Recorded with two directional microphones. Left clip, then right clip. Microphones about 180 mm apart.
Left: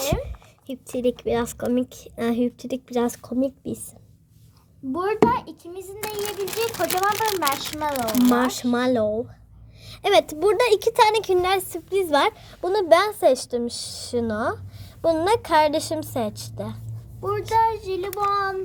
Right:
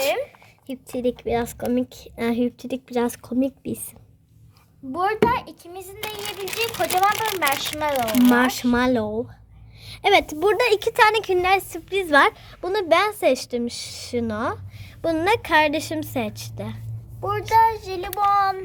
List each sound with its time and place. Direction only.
0.0 s a sound: 45° right (ahead or behind)
0.7 s a woman's voice: 5° left (ahead or behind)
3.2 s speech: 15° right (ahead or behind)
4.9 s speech: 50° right (ahead or behind)
8.0 s a woman's voice: centre (ahead or behind)
8.3 s a woman's voice: 15° right (ahead or behind)
17.6 s speech: 55° right (ahead or behind)